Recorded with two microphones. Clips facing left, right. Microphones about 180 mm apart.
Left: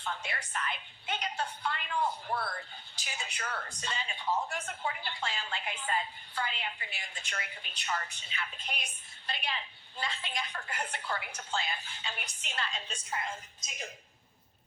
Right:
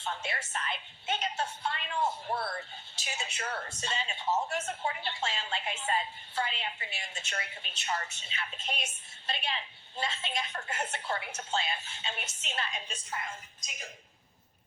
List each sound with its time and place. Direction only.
0.0 s a woman's voice: 25° right (ahead or behind)